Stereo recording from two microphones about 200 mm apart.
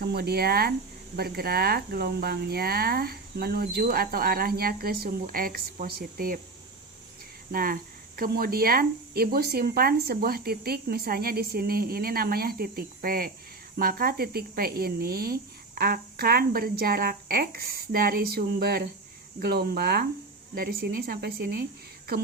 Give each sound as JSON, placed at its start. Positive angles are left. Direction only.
{"t": 0.0, "sound": "speech", "side_deg": -50}
{"t": 7.5, "sound": "speech", "side_deg": -45}